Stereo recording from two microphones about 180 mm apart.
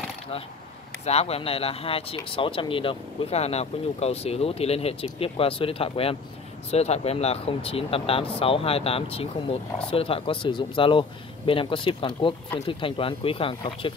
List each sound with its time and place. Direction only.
1.0 s speech: 35° left (ahead or behind)